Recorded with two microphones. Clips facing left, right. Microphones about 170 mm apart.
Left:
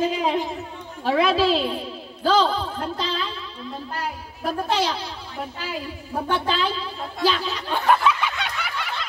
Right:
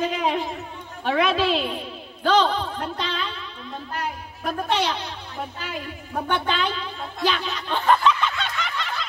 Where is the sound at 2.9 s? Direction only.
35° left (ahead or behind).